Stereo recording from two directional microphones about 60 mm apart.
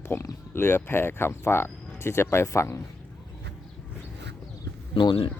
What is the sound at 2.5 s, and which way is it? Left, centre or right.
Speech, left.